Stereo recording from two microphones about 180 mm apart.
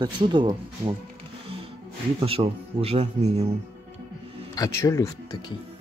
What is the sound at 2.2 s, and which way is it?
Speech, 30° right (ahead or behind).